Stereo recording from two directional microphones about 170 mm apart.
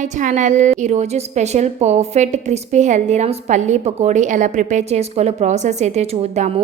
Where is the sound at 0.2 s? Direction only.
50° right (ahead or behind).